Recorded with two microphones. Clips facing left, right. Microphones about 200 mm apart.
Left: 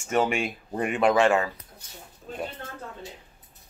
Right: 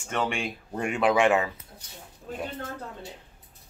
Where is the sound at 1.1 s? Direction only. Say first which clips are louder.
Even; 15° right (ahead or behind).